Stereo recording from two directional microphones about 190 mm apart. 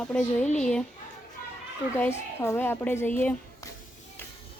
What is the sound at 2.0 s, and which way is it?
Speech, 15° left (ahead or behind).